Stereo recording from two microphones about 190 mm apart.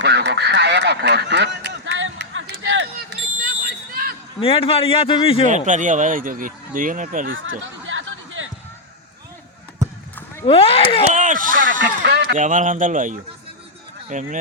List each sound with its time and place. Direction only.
0.0 s duck: 65° right (ahead or behind); by 3.2 s 85° right
4.4 s a man's voice: 30° left (ahead or behind)
5.5 s speech: 40° right (ahead or behind)
7.3 s speech: 90° right
7.6 s a sound: 90° right
10.4 s speech: 30° left (ahead or behind)
11.1 s a sound: 45° right (ahead or behind)
11.8 s speech: 65° right (ahead or behind)
12.3 s speech: 45° right (ahead or behind)